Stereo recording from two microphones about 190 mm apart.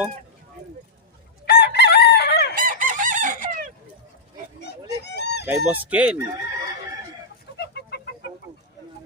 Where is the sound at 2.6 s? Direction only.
45° right (ahead or behind).